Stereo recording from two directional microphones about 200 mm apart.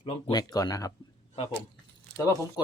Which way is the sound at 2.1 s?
20° left (ahead or behind).